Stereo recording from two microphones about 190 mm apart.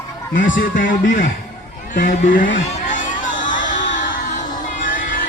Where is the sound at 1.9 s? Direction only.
45° left (ahead or behind).